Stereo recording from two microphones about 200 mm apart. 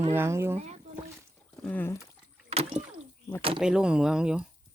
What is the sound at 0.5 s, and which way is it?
Speech, 35° right (ahead or behind).